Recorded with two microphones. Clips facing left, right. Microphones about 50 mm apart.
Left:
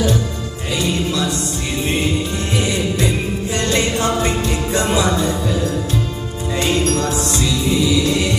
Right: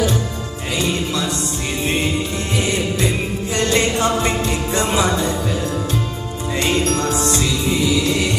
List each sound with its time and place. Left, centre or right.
0.7 s music: right
3.5 s music: right
6.6 s music: right